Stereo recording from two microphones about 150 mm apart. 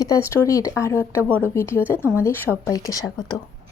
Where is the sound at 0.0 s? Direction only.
20° left (ahead or behind).